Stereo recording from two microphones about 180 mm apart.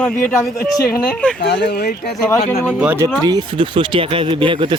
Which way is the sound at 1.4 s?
65° left (ahead or behind).